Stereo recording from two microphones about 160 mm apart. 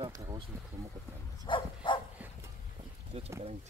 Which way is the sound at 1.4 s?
30° left (ahead or behind).